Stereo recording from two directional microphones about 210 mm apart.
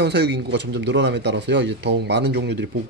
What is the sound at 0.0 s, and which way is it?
Speech, 55° right (ahead or behind).